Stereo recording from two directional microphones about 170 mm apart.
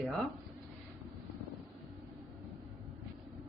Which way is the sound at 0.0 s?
5° left (ahead or behind).